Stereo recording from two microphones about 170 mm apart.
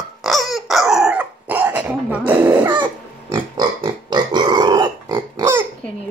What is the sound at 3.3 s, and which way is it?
Pig, 25° right (ahead or behind).